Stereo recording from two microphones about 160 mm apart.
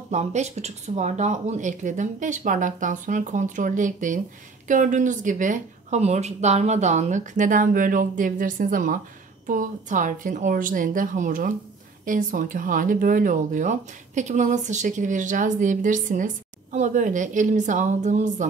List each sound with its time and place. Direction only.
0.1 s speech: 45° right (ahead or behind)